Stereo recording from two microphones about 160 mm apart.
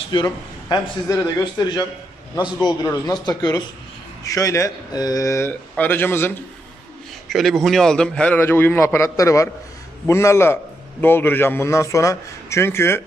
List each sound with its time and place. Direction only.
0.1 s speech: 30° left (ahead or behind)
7.2 s a man's voice: centre (ahead or behind)